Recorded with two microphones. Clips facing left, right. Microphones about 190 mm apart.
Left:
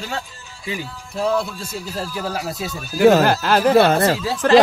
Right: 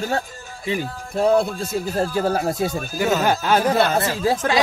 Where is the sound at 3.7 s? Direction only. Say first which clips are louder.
Left 5 dB; 55° left (ahead or behind).